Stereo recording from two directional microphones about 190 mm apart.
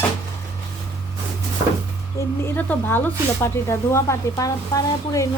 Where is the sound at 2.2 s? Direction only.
15° left (ahead or behind).